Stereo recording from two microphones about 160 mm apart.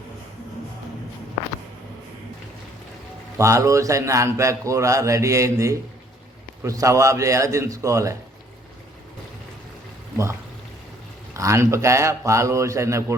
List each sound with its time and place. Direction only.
3.3 s a man's voice: 20° right (ahead or behind)
11.3 s a man's voice: 20° right (ahead or behind)